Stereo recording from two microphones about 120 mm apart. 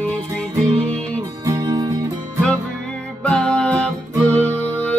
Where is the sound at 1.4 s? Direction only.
30° right (ahead or behind).